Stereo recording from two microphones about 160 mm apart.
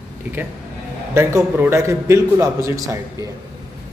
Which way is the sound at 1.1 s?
15° right (ahead or behind).